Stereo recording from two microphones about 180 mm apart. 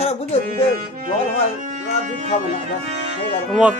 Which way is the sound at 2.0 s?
45° right (ahead or behind).